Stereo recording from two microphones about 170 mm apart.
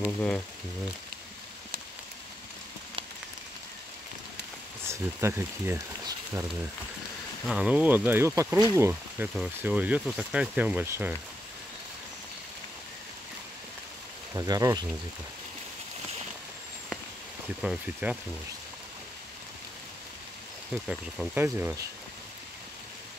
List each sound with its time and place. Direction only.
0.0 s speech: 5° left (ahead or behind)
4.8 s speech: 15° right (ahead or behind)
7.4 s speech: 5° right (ahead or behind)
14.3 s speech: 20° right (ahead or behind)
17.6 s speech: 5° right (ahead or behind)
20.7 s speech: centre (ahead or behind)
21.4 s speech: 15° right (ahead or behind)